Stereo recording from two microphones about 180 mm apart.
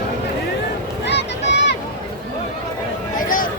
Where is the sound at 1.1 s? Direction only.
75° left (ahead or behind).